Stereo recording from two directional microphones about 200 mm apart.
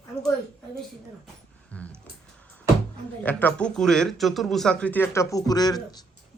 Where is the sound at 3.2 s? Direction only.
5° left (ahead or behind).